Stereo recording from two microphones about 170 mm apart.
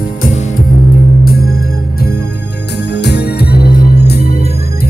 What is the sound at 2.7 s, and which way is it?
Organ, 80° left.